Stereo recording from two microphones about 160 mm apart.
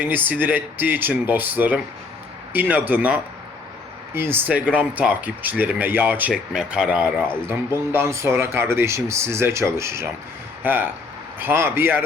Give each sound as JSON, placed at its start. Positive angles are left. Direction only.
{"t": 0.0, "sound": "speech", "side_deg": -10}